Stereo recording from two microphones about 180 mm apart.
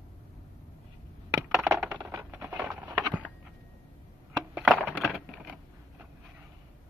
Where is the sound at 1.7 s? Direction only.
10° right (ahead or behind).